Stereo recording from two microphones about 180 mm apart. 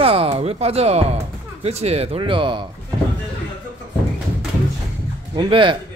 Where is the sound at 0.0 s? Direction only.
35° right (ahead or behind).